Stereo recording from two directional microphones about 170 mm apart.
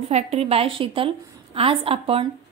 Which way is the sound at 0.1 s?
40° right (ahead or behind).